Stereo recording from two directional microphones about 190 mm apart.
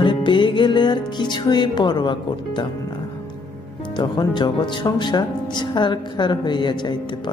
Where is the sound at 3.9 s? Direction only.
25° left (ahead or behind).